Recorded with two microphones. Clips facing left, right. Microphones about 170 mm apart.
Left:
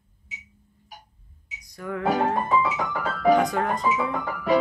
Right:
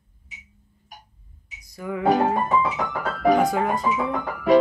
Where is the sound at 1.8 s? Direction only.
5° right (ahead or behind).